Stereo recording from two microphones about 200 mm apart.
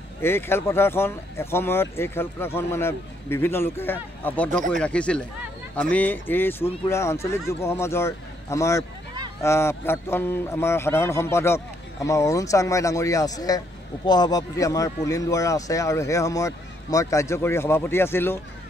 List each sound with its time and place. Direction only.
0.2 s speech: 10° left (ahead or behind)